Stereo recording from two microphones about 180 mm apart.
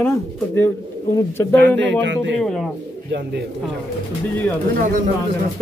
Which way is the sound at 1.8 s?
90° right.